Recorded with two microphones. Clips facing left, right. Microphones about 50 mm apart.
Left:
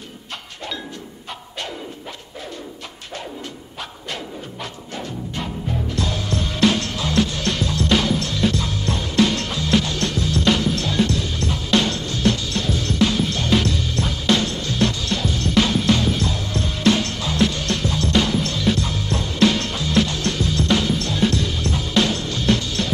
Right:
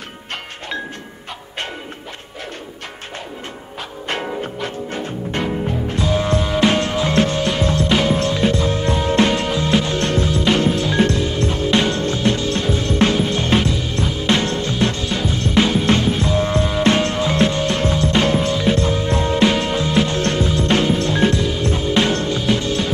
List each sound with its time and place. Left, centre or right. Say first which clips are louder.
4.1 s music: right 9 dB; right
4.6 s music: right 6 dB; right
5.3 s music: right 7 dB; right
5.9 s music: right 9 dB; right
9.3 s music: right 3 dB; centre; by 10.3 s right
10.7 s music: right 4 dB; centre
11.0 s music: right 4 dB; right
15.0 s music: right 2 dB; right
22.3 s music: right 2 dB; centre
22.6 s music: right 5 dB; right